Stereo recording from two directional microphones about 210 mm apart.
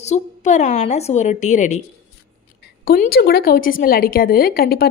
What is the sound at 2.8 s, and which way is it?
A woman's voice, 45° left (ahead or behind).